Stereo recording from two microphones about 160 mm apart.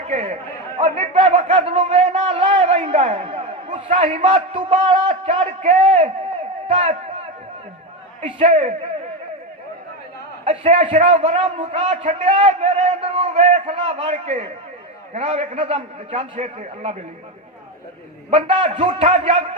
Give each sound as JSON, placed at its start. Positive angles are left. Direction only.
{"t": 0.9, "sound": "a sound", "side_deg": -40}
{"t": 2.6, "sound": "a sound", "side_deg": -45}
{"t": 3.1, "sound": "a sound", "side_deg": -35}
{"t": 3.8, "sound": "a man's voice", "side_deg": -50}
{"t": 10.4, "sound": "a man's voice", "side_deg": -45}
{"t": 11.3, "sound": "a man's voice", "side_deg": -30}
{"t": 11.7, "sound": "a man's voice", "side_deg": -40}
{"t": 15.5, "sound": "a man's voice", "side_deg": -35}
{"t": 16.3, "sound": "a man's voice", "side_deg": -45}
{"t": 18.3, "sound": "a man's voice", "side_deg": -35}